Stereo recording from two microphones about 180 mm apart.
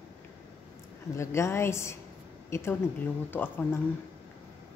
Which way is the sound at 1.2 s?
15° left (ahead or behind).